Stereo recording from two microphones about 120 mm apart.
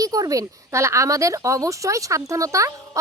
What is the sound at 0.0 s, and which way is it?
Speech, 30° right (ahead or behind).